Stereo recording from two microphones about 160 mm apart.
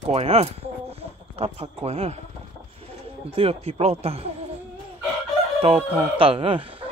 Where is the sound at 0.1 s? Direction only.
40° right (ahead or behind).